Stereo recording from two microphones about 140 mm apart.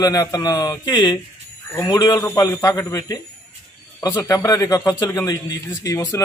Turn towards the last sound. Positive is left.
turn(degrees=20)  # may be behind; listen again after turning